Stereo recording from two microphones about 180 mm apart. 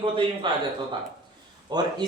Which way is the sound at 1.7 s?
25° right (ahead or behind).